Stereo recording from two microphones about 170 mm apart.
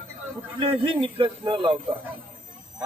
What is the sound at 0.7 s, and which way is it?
Speech, 30° right (ahead or behind).